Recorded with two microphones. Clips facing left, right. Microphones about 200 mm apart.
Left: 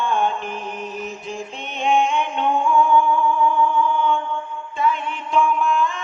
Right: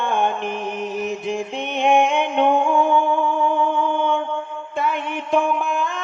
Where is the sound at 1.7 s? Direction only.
65° right (ahead or behind).